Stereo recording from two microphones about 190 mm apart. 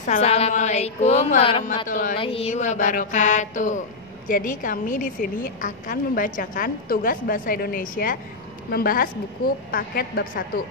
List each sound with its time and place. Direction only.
0.0 s mantra: 35° left (ahead or behind)
1.9 s a woman's voice: 45° left (ahead or behind)
2.1 s mantra: 30° left (ahead or behind)
4.3 s a woman's voice: 45° left (ahead or behind)